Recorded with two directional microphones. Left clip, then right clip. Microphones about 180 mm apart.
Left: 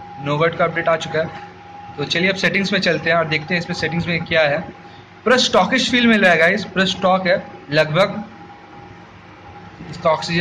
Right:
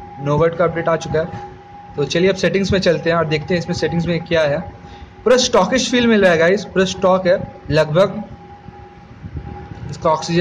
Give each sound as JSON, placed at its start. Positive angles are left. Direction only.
{"t": 0.2, "sound": "a man's voice", "side_deg": -35}
{"t": 9.8, "sound": "a man's voice", "side_deg": -40}